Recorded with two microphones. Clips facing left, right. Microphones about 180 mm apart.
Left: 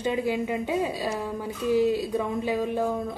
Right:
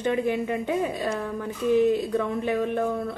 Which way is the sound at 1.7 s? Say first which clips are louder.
Right 2 dB; 20° right (ahead or behind).